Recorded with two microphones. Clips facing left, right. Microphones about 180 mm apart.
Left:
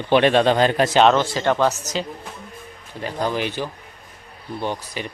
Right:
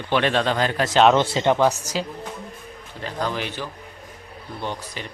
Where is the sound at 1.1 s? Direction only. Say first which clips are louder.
Right 1 dB; 25° right (ahead or behind).